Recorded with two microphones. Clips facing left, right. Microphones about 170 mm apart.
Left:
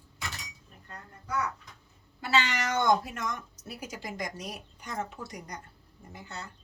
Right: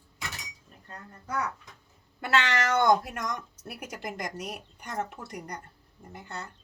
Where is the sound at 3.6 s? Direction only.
60° right (ahead or behind).